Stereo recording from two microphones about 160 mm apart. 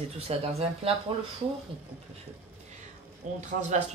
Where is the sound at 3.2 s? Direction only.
50° right (ahead or behind).